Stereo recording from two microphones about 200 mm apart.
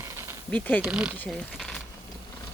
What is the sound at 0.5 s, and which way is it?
Speech, 10° left (ahead or behind).